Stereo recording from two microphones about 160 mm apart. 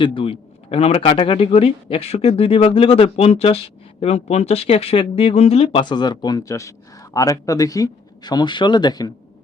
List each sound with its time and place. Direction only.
0.0 s a man's voice: 35° left (ahead or behind)